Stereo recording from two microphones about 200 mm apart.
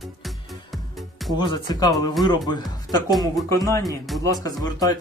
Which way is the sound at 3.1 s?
Centre (ahead or behind).